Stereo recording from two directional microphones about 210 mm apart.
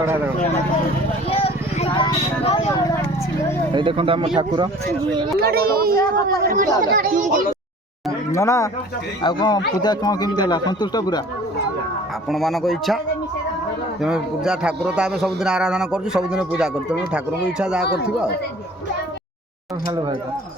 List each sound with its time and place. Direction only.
1.3 s speech: 25° left (ahead or behind)
3.7 s speech: 25° right (ahead or behind)
5.4 s a woman's voice: 45° right (ahead or behind)
8.3 s speech: 15° left (ahead or behind)
12.3 s a man's voice: centre (ahead or behind)
14.0 s a man's voice: 5° right (ahead or behind)